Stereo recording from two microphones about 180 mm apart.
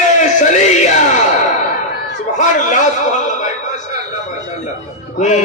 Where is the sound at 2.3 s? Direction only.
45° left (ahead or behind).